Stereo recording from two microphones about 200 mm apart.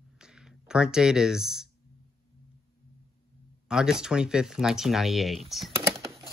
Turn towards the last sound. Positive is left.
turn(degrees=0)  # may be behind; listen again after turning